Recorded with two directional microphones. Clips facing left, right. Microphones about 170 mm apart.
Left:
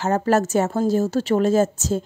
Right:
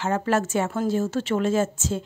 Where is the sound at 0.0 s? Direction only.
40° left (ahead or behind).